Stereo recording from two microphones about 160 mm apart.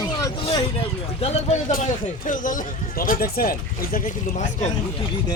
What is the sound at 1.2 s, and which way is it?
Speech, 40° left (ahead or behind).